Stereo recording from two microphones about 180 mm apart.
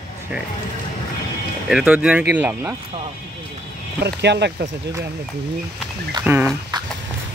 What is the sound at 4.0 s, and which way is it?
Speech, 65° right (ahead or behind).